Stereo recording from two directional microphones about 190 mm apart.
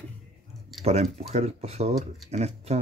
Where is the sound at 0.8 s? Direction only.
35° right (ahead or behind).